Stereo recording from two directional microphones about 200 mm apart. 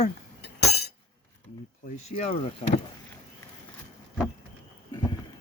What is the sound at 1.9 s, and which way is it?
Speech, 35° left (ahead or behind).